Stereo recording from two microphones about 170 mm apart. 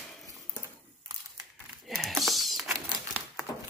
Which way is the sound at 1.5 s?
Centre (ahead or behind).